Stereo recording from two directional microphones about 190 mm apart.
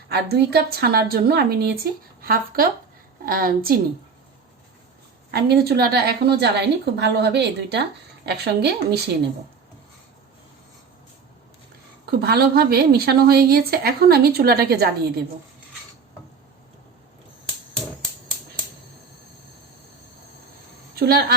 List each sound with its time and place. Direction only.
0.1 s a woman's voice: 55° right (ahead or behind)
5.3 s a woman's voice: 55° right (ahead or behind)
12.2 s a woman's voice: 55° right (ahead or behind)
20.9 s a woman's voice: 55° right (ahead or behind)